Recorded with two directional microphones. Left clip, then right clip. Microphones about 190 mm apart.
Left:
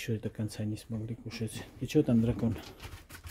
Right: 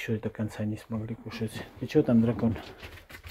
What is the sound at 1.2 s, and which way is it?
Speech, 25° left (ahead or behind).